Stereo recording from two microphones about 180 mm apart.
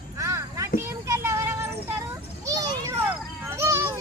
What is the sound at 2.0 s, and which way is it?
Children playing, 15° right (ahead or behind).